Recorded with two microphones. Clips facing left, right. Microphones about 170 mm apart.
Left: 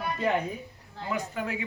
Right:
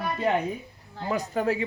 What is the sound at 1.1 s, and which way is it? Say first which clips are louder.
Speech: right 6 dB; 40° right (ahead or behind).